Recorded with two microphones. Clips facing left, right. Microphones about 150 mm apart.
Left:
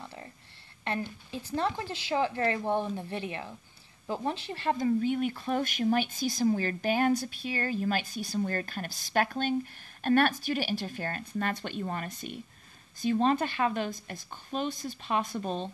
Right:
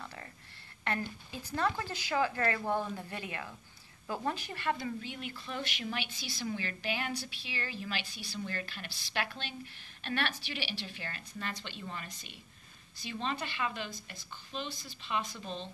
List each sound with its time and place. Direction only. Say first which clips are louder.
0.0 s a sound: left 2 dB; 20° left (ahead or behind)
0.8 s speech: left 2 dB; 25° left (ahead or behind)
5.0 s speech: left 13 dB; 50° left (ahead or behind)